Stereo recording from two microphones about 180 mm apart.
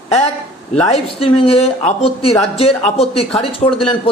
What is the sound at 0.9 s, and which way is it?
A man's voice, 35° left (ahead or behind).